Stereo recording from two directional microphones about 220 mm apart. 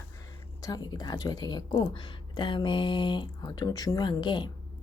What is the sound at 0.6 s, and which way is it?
Speech, 15° left (ahead or behind).